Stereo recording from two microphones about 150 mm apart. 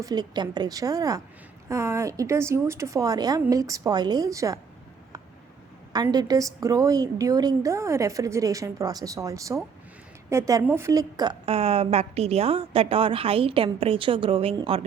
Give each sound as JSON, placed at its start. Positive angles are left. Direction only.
{"t": 0.0, "sound": "a woman's voice", "side_deg": -25}
{"t": 5.9, "sound": "a woman's voice", "side_deg": -25}